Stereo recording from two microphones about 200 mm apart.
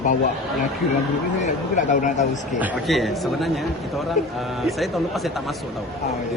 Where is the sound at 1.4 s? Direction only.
40° left (ahead or behind).